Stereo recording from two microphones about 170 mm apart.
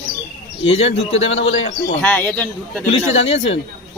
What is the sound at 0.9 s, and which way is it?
Speech, 35° left (ahead or behind).